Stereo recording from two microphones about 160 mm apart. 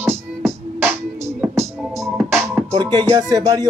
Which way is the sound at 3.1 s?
20° right (ahead or behind).